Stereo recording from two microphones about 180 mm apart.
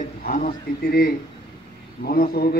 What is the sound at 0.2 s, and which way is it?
A man's voice, 50° left (ahead or behind).